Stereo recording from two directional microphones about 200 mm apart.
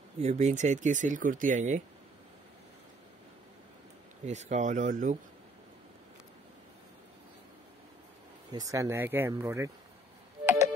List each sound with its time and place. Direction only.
0.2 s speech: 35° right (ahead or behind)
4.3 s speech: 35° right (ahead or behind)
8.5 s speech: 15° right (ahead or behind)
10.4 s a sound: 10° right (ahead or behind)